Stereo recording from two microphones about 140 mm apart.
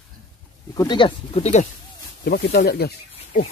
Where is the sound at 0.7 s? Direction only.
30° left (ahead or behind).